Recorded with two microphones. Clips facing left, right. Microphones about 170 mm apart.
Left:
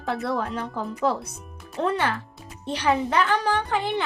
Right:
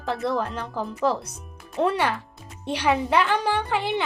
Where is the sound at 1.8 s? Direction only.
10° right (ahead or behind).